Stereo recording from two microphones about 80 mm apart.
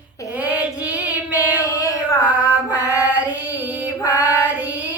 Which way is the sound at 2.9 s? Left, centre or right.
Centre.